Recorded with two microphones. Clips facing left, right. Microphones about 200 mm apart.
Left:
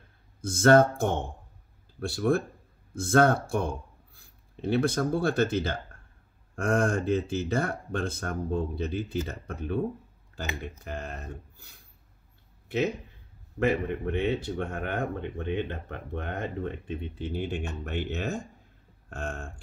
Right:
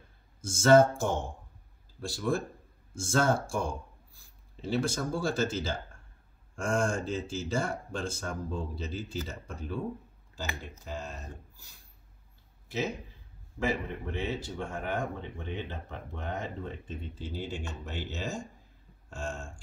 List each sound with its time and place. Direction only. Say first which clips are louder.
0.4 s speech: left 1 dB; 60° left (ahead or behind)